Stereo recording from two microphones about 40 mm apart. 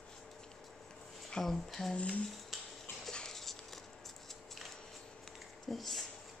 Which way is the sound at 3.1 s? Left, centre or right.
Centre.